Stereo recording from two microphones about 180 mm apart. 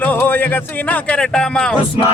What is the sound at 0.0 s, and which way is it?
Speech, 10° left (ahead or behind).